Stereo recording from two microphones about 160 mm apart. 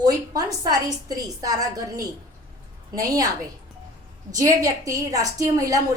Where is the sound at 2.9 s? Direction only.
20° right (ahead or behind).